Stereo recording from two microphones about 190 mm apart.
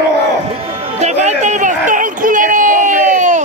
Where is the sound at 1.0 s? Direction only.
35° right (ahead or behind).